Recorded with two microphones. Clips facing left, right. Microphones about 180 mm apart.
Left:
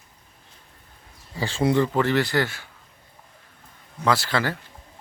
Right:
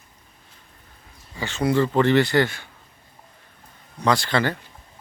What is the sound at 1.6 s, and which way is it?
Speech, 20° left (ahead or behind).